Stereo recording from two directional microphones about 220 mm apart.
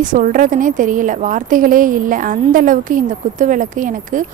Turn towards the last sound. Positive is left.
turn(degrees=-35)  # may be behind; listen again after turning